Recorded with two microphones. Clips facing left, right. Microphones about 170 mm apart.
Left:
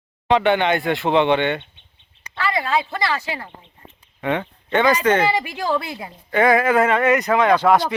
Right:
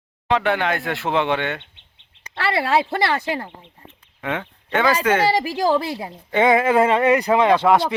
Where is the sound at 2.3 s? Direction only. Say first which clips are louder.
Right 2 dB; 70° right (ahead or behind); by 3.4 s 50° right (ahead or behind).